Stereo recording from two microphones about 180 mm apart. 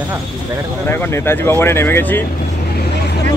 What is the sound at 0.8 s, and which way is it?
Speech, 15° left (ahead or behind).